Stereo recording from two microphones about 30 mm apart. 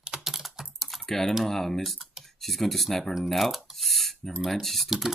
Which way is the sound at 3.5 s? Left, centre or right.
Centre.